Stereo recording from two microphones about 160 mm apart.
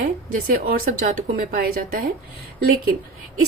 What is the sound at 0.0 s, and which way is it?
Speech, 60° right (ahead or behind).